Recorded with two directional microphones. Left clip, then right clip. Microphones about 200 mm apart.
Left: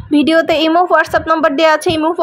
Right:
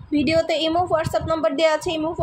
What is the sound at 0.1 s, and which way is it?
A woman's voice, 40° left (ahead or behind).